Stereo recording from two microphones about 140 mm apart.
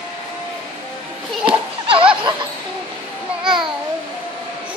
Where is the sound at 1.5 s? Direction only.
40° right (ahead or behind).